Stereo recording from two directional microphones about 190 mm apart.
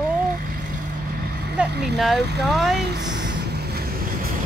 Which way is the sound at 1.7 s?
60° right (ahead or behind).